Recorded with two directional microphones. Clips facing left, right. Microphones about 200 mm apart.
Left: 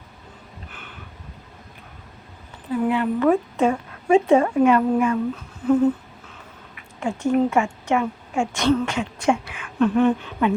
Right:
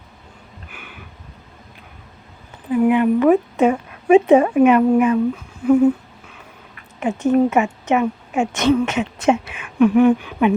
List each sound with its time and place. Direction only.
0.7 s a sound: 10° right (ahead or behind)
2.6 s speech: 15° right (ahead or behind)
7.0 s a woman's voice: 20° right (ahead or behind)
9.8 s speech: 10° right (ahead or behind)